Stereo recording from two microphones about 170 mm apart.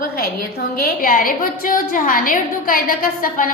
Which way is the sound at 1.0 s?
55° left (ahead or behind).